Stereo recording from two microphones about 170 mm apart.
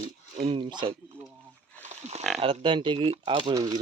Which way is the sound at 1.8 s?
40° right (ahead or behind).